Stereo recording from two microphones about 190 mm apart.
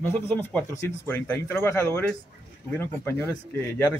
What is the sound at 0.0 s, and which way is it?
Speech, 10° left (ahead or behind).